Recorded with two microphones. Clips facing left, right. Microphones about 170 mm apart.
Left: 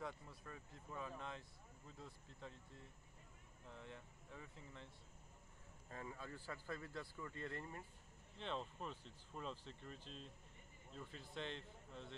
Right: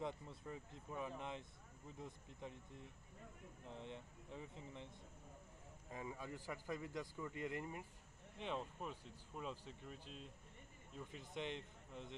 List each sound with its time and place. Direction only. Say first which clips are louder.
0.0 s speech: right 4 dB; 25° right (ahead or behind)